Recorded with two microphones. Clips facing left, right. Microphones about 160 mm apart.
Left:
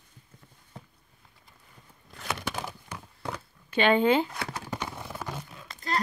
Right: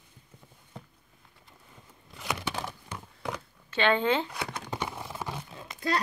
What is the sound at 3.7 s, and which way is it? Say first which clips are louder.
Speech: left 3 dB; 10° left (ahead or behind).